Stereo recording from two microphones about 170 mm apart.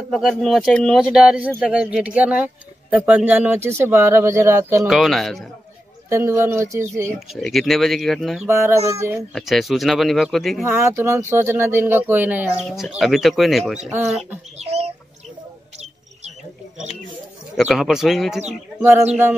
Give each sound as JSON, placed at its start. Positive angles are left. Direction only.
{"t": 0.1, "sound": "speech", "side_deg": 0}
{"t": 4.8, "sound": "speech", "side_deg": 0}
{"t": 6.0, "sound": "speech", "side_deg": -15}
{"t": 7.2, "sound": "speech", "side_deg": 0}
{"t": 8.5, "sound": "speech", "side_deg": -15}
{"t": 9.3, "sound": "speech", "side_deg": 0}
{"t": 10.7, "sound": "speech", "side_deg": -15}
{"t": 14.6, "sound": "chicken", "side_deg": -40}
{"t": 17.6, "sound": "speech", "side_deg": 0}
{"t": 18.8, "sound": "speech", "side_deg": -15}